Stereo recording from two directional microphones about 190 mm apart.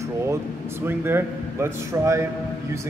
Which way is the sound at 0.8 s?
10° right (ahead or behind).